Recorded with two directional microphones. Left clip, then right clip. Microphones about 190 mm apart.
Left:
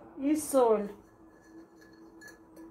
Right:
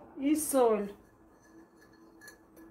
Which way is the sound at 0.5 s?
15° right (ahead or behind).